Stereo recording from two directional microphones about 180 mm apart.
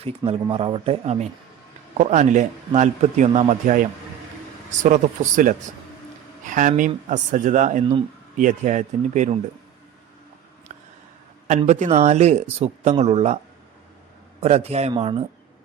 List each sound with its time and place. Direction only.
0.3 s a man's voice: 30° right (ahead or behind)
10.7 s a sound: 40° right (ahead or behind)
11.4 s a man's voice: 40° right (ahead or behind)
14.4 s a man's voice: 35° right (ahead or behind)